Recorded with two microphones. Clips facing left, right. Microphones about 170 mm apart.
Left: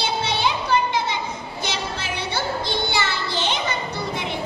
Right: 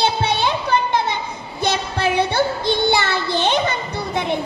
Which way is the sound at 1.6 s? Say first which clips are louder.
Right 10 dB; 55° right (ahead or behind).